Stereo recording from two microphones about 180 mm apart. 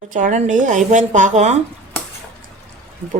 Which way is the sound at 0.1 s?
45° right (ahead or behind).